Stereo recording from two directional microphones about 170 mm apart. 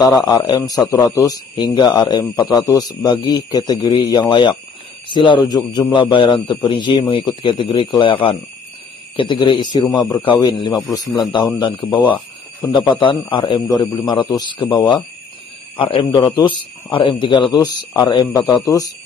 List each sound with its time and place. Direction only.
0.0 s speech: 20° left (ahead or behind)